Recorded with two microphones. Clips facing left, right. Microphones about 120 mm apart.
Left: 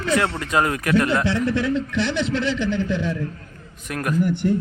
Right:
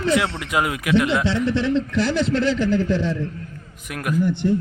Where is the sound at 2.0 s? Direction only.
40° right (ahead or behind).